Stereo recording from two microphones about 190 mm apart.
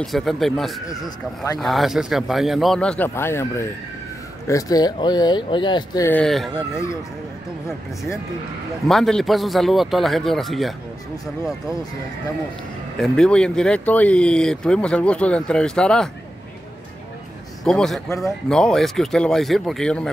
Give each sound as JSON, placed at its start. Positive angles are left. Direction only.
{"t": 0.0, "sound": "speech", "side_deg": 0}
{"t": 1.0, "sound": "speech", "side_deg": 20}
{"t": 1.6, "sound": "speech", "side_deg": 0}
{"t": 6.0, "sound": "speech", "side_deg": 5}
{"t": 8.8, "sound": "speech", "side_deg": 0}
{"t": 13.0, "sound": "speech", "side_deg": 5}
{"t": 17.6, "sound": "speech", "side_deg": 0}